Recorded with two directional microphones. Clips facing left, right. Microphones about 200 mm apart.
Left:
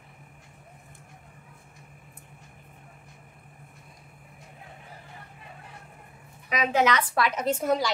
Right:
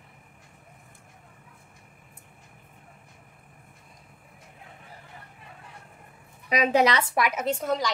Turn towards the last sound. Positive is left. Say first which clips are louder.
# left 2 dB
turn(degrees=10)  # may be behind; listen again after turning